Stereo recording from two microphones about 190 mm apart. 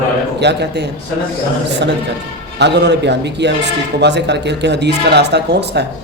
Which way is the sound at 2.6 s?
65° right (ahead or behind).